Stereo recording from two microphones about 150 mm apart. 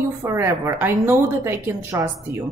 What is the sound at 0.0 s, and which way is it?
A woman's voice, 15° right (ahead or behind).